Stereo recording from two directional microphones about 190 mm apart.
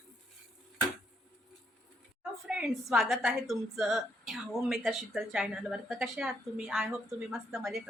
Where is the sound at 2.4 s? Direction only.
5° right (ahead or behind).